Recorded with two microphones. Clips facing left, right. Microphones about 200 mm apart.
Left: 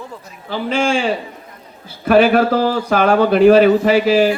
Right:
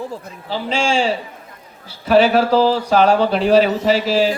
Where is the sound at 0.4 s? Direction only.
55° left (ahead or behind).